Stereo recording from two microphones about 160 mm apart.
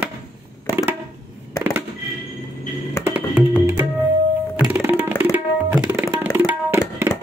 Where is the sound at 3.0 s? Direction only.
10° right (ahead or behind).